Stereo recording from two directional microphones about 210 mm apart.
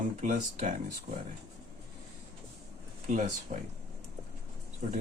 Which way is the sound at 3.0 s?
35° right (ahead or behind).